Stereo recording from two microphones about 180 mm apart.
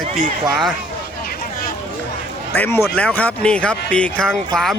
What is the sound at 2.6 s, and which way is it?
Speech, 15° left (ahead or behind).